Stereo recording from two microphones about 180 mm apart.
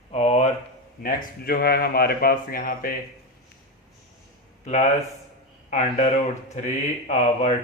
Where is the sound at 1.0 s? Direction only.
55° left (ahead or behind).